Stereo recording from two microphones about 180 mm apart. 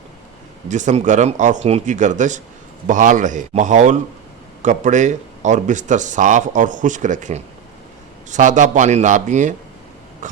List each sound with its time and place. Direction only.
0.7 s speech: 40° right (ahead or behind)